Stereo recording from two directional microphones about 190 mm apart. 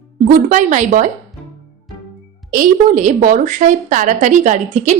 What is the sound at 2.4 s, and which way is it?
A woman's voice, 45° right (ahead or behind).